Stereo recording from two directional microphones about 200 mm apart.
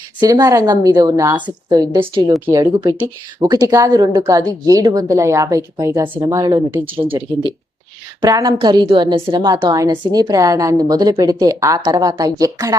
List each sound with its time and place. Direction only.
0.2 s a woman's voice: 20° right (ahead or behind)